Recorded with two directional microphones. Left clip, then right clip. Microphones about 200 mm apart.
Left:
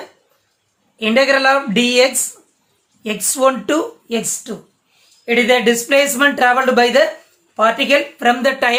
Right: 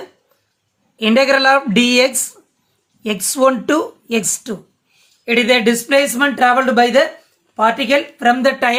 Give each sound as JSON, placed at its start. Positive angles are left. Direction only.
{"t": 0.9, "sound": "speech", "side_deg": -20}